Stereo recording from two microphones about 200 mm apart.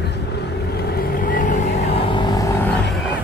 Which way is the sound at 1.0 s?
45° left (ahead or behind).